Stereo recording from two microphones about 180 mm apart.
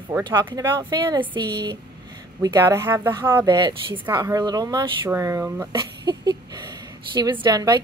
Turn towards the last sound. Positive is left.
turn(degrees=-25)  # may be behind; listen again after turning